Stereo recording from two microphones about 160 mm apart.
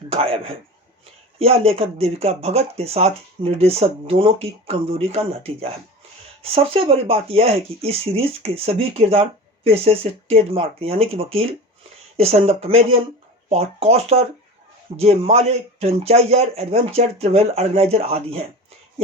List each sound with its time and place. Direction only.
0.1 s a man's voice: 35° right (ahead or behind)
6.4 s speech: 40° right (ahead or behind)